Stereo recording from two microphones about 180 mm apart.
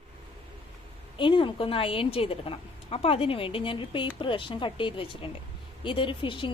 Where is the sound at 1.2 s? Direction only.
30° left (ahead or behind).